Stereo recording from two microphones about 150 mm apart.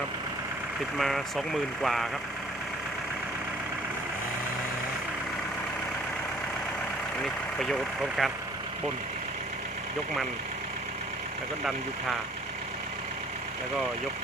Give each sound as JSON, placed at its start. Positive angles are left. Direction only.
{"t": 0.9, "sound": "speech", "side_deg": 0}
{"t": 7.6, "sound": "speech", "side_deg": 0}